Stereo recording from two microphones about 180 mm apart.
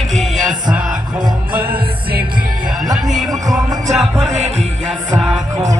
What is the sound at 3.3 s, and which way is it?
Music, 20° right (ahead or behind).